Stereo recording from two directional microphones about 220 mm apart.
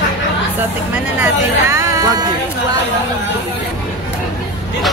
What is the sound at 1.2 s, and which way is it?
Speech, 15° right (ahead or behind).